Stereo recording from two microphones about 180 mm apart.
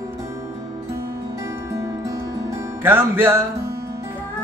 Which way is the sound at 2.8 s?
10° right (ahead or behind).